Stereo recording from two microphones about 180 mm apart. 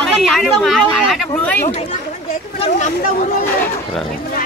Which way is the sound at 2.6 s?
45° left (ahead or behind).